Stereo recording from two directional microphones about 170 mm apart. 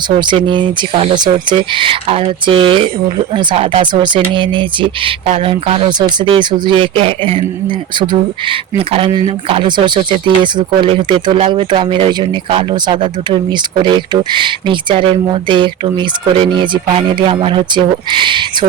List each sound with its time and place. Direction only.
0.2 s speech: 30° right (ahead or behind)